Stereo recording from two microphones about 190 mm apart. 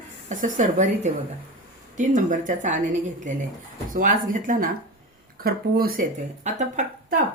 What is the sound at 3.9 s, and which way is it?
Speech, 45° right (ahead or behind).